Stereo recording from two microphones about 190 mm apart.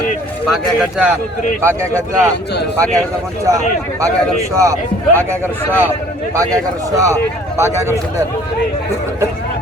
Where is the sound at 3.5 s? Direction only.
15° right (ahead or behind).